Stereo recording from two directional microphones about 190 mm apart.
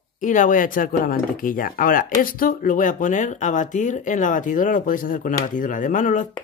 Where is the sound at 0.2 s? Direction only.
40° left (ahead or behind).